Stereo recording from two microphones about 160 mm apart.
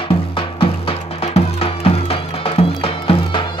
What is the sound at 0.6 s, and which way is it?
Music, 40° left (ahead or behind).